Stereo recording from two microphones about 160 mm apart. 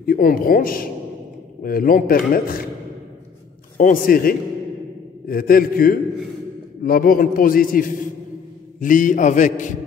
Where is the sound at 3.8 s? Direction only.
60° left (ahead or behind).